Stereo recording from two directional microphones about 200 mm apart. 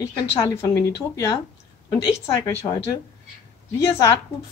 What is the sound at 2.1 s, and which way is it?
Speech, 20° left (ahead or behind).